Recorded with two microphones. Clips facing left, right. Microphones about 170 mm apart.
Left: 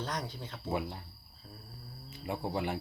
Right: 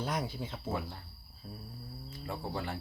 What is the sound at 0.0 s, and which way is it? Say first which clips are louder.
Speech: right 3 dB; 10° right (ahead or behind).